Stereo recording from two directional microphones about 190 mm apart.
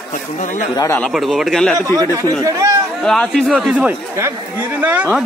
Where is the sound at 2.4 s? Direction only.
15° right (ahead or behind).